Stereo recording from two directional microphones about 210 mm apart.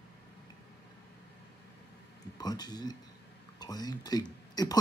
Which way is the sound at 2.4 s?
20° left (ahead or behind).